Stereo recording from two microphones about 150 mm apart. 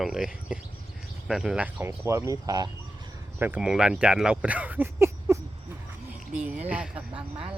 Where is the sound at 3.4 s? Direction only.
10° right (ahead or behind).